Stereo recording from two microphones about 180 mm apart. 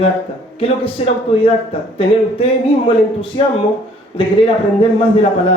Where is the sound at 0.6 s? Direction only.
35° left (ahead or behind).